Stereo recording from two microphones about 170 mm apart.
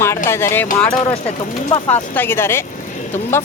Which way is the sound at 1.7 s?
25° left (ahead or behind).